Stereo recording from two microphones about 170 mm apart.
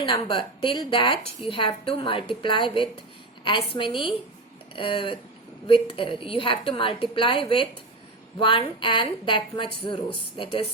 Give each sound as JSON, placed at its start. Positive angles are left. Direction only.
{"t": 0.0, "sound": "a woman's voice", "side_deg": 30}